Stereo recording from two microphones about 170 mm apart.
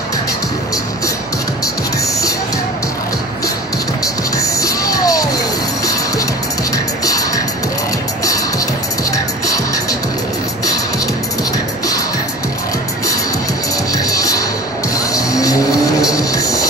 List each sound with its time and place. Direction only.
4.0 s music: 20° left (ahead or behind)
6.7 s music: 20° left (ahead or behind)
9.1 s music: 20° left (ahead or behind)
13.9 s music: 20° left (ahead or behind)